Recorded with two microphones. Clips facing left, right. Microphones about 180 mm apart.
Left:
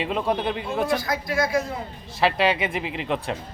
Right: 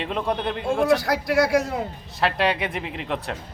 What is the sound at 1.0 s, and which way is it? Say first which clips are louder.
Speech: right 4 dB; 70° right (ahead or behind).